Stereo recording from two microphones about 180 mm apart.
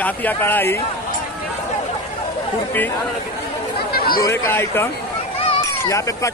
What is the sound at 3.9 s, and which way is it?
Chatter, 55° left (ahead or behind).